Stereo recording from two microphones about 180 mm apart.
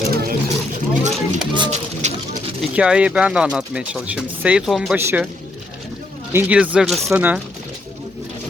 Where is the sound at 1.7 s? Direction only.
40° right (ahead or behind).